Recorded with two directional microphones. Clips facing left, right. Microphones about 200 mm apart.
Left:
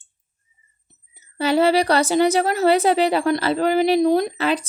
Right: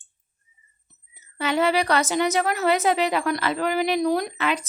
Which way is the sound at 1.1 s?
35° left (ahead or behind).